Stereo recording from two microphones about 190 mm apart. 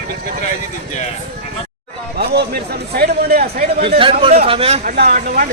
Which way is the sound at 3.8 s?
30° right (ahead or behind).